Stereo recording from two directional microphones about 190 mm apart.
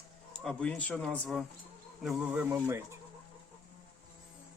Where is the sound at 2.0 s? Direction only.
5° right (ahead or behind).